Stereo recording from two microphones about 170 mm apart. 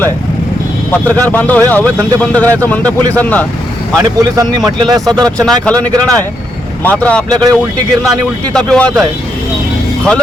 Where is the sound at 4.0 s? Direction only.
20° right (ahead or behind).